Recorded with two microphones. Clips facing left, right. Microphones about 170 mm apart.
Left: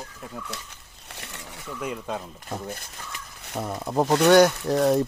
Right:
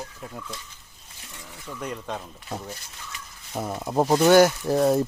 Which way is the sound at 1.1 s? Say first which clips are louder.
Left 4 dB; 75° left (ahead or behind).